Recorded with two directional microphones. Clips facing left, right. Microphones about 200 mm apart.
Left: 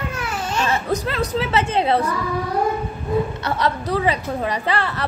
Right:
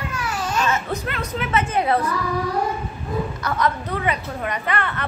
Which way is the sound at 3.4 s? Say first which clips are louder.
Left 1 dB; 30° left (ahead or behind).